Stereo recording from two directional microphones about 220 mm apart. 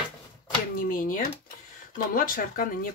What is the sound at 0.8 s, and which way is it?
Speech, 40° left (ahead or behind).